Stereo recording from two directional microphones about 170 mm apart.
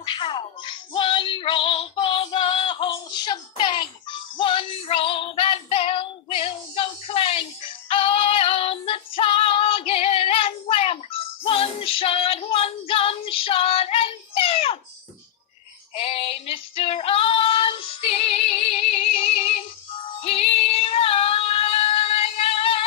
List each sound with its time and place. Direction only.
0.0 s music: 25° left (ahead or behind)
11.4 s female singing: 35° left (ahead or behind)
16.7 s child singing: 35° left (ahead or behind)